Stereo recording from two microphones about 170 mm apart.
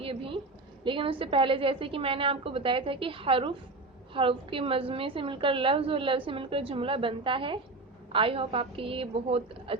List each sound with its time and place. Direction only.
0.0 s a woman's voice: 30° right (ahead or behind)